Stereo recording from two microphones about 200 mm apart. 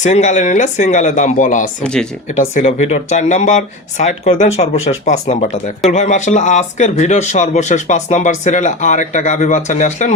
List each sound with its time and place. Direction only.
0.0 s speech: 35° left (ahead or behind)
1.8 s speech: 5° left (ahead or behind)
2.3 s speech: 35° left (ahead or behind)